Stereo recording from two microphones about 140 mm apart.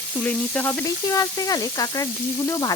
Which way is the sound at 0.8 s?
20° left (ahead or behind).